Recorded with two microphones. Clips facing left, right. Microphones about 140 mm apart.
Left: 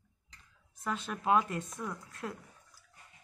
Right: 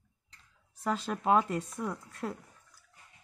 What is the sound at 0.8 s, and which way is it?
Speech, 35° right (ahead or behind).